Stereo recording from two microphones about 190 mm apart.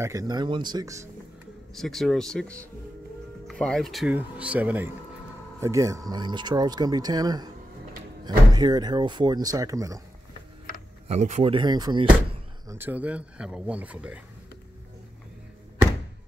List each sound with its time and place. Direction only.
0.0 s speech: 15° right (ahead or behind)
1.8 s speech: centre (ahead or behind); by 10.0 s 15° right (ahead or behind)
11.1 s speech: 35° right (ahead or behind)
12.6 s speech: 10° right (ahead or behind)